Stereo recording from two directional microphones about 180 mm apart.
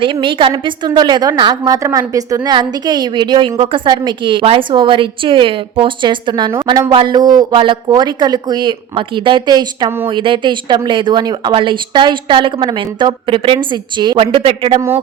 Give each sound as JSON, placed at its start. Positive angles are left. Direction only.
{"t": 0.0, "sound": "a woman's voice", "side_deg": -25}